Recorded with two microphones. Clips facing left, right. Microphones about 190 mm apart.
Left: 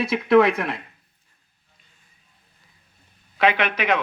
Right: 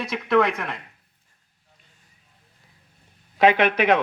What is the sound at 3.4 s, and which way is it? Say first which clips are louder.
Speech: right 3 dB; 45° right (ahead or behind).